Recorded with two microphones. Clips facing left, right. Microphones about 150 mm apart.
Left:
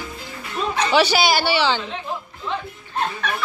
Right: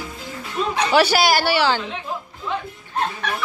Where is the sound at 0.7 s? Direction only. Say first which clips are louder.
Right 1 dB; 5° right (ahead or behind).